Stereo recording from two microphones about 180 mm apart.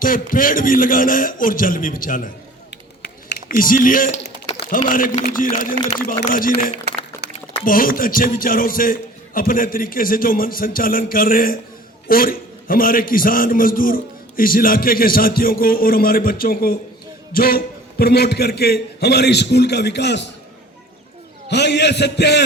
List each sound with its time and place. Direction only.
0.0 s a man's voice: 50° left (ahead or behind)
2.6 s a sound: 70° left (ahead or behind); by 4.3 s 50° left (ahead or behind)
4.8 s a man's voice: 50° left (ahead or behind); by 20.2 s 70° left (ahead or behind)
21.5 s a man's voice: 70° left (ahead or behind)